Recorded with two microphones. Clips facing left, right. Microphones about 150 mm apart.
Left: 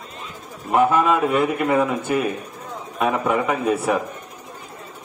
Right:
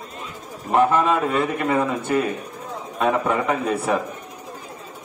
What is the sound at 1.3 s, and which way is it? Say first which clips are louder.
A man's voice: left 2 dB; 10° left (ahead or behind).